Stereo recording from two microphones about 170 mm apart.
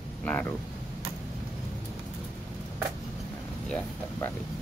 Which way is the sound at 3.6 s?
5° left (ahead or behind).